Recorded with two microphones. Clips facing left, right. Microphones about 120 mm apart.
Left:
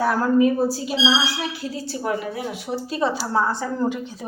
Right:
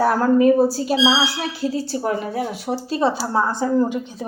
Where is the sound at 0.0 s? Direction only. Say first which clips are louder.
Right 3 dB; 40° right (ahead or behind).